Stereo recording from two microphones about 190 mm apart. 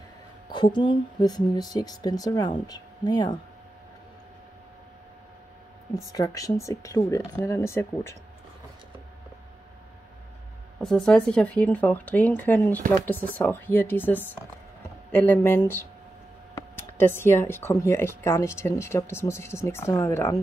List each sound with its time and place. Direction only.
0.5 s speech: 25° left (ahead or behind)
6.1 s speech: 20° left (ahead or behind)
10.8 s speech: 5° left (ahead or behind)